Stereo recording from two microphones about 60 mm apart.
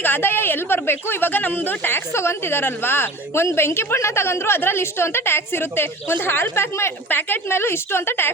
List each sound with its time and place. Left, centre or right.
0.0 s speech: left